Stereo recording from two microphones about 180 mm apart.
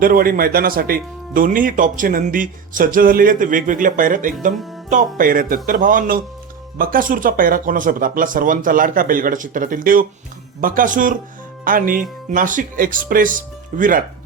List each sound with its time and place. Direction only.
0.0 s speech: 50° right (ahead or behind)